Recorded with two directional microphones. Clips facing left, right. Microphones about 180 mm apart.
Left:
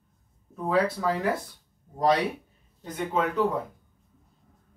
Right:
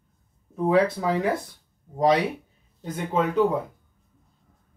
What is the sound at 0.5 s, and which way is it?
Speech, 20° right (ahead or behind).